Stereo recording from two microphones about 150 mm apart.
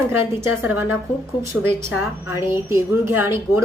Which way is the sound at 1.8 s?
20° right (ahead or behind).